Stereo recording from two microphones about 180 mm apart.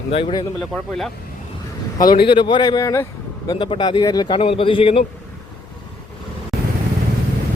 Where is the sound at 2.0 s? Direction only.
25° left (ahead or behind).